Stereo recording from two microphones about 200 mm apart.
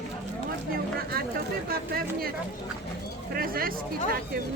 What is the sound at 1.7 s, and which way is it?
Speech, 50° right (ahead or behind).